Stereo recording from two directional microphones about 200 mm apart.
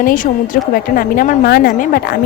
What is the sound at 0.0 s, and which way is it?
A woman's voice, 45° left (ahead or behind).